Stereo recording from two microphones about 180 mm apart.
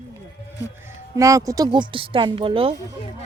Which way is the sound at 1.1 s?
15° right (ahead or behind).